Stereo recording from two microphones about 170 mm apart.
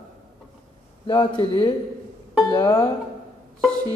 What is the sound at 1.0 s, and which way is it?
Speech, 30° left (ahead or behind).